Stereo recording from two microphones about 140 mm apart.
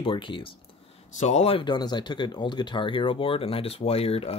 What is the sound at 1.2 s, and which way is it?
Speech, 50° left (ahead or behind).